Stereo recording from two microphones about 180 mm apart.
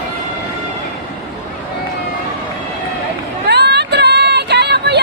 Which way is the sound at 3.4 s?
65° right (ahead or behind).